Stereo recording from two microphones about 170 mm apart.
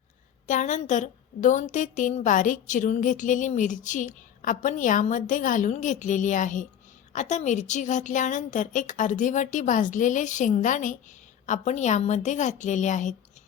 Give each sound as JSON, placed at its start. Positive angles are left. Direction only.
{"t": 0.4, "sound": "a woman's voice", "side_deg": 45}